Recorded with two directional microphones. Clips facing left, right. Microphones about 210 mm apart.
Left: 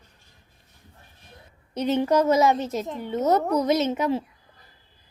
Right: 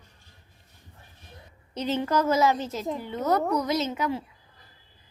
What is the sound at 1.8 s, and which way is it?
A child's voice, 15° left (ahead or behind).